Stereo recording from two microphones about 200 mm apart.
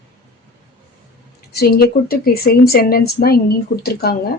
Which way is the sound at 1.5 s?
50° left (ahead or behind).